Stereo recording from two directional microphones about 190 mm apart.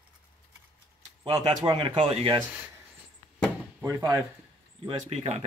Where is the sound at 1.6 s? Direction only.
25° right (ahead or behind).